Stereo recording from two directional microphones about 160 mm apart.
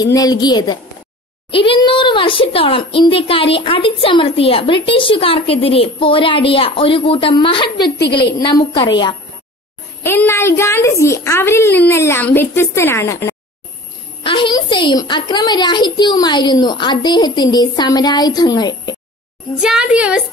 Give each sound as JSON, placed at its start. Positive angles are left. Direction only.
{"t": 0.0, "sound": "a child's voice", "side_deg": 25}
{"t": 7.7, "sound": "a woman's voice", "side_deg": 90}
{"t": 10.0, "sound": "a woman's voice", "side_deg": 15}
{"t": 14.2, "sound": "a child's voice", "side_deg": 30}
{"t": 19.6, "sound": "a woman's voice", "side_deg": -5}